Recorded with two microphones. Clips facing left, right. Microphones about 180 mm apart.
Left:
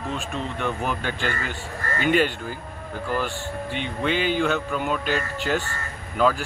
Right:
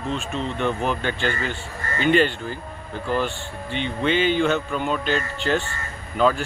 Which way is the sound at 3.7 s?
5° left (ahead or behind).